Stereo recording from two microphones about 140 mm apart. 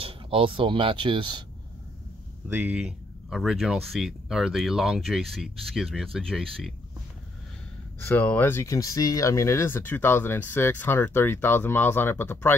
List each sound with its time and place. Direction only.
0.0 s speech: 40° right (ahead or behind)
2.4 s speech: 10° right (ahead or behind)
8.0 s speech: 10° left (ahead or behind)